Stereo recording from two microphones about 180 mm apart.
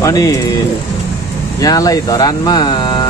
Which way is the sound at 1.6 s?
20° left (ahead or behind).